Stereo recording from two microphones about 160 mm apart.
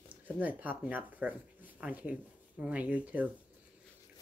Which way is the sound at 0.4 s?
10° right (ahead or behind).